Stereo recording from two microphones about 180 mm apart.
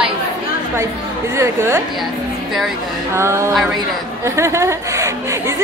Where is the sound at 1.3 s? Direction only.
15° right (ahead or behind).